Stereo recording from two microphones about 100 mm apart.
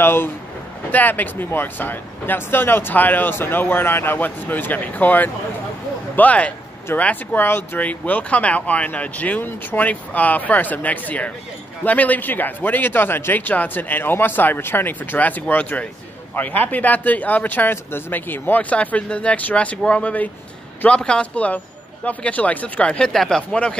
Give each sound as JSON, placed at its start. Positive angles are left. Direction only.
{"t": 0.0, "sound": "speech", "side_deg": 25}